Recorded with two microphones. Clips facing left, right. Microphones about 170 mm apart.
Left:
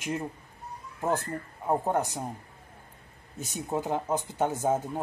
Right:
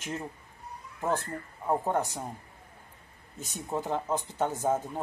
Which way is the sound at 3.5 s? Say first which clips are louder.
Left 2 dB; 15° left (ahead or behind).